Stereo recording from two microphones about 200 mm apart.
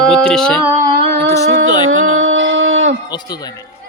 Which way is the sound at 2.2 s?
70° right (ahead or behind).